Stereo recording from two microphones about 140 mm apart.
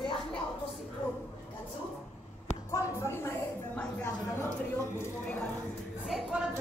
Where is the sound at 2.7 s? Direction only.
20° left (ahead or behind).